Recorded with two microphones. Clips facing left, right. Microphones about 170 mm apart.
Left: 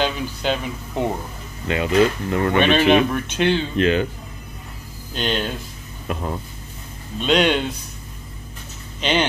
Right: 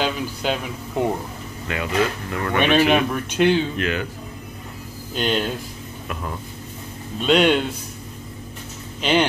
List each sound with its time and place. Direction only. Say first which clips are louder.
0.0 s speech: left 1 dB; 5° right (ahead or behind)
1.7 s speech: left 5 dB; 25° left (ahead or behind)
2.6 s speech: even; 10° right (ahead or behind)
3.7 s speech: left 6 dB; 25° left (ahead or behind)
5.1 s speech: right 1 dB; 5° right (ahead or behind)
7.2 s speech: right 1 dB; 5° right (ahead or behind)
9.0 s speech: right 1 dB; 5° right (ahead or behind)